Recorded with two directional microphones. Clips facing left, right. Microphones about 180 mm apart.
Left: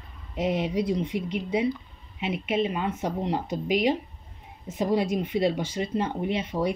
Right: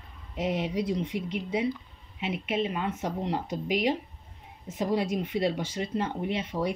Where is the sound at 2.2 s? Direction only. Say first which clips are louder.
Left 3 dB; 10° left (ahead or behind).